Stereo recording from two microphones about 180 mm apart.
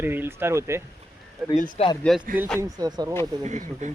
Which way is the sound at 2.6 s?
20° right (ahead or behind).